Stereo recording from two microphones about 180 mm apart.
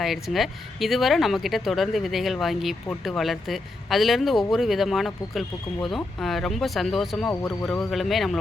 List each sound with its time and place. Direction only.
0.0 s speech: centre (ahead or behind)